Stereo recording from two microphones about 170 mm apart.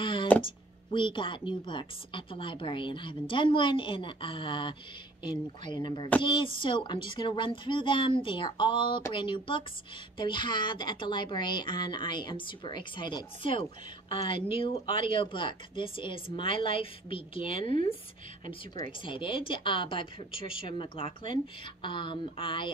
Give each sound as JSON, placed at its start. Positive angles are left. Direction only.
{"t": 0.0, "sound": "a sound", "side_deg": 30}
{"t": 0.9, "sound": "speech", "side_deg": 30}
{"t": 19.0, "sound": "speech", "side_deg": 30}